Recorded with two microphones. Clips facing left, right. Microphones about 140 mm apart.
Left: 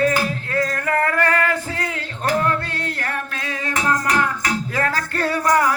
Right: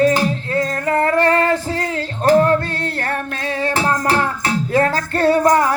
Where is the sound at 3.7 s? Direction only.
30° right (ahead or behind).